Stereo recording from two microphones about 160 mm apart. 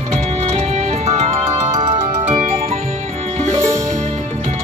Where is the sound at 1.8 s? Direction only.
25° right (ahead or behind).